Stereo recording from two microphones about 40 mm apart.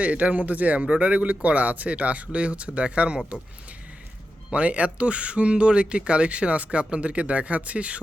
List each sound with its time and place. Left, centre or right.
0.0 s speech: right
4.5 s speech: right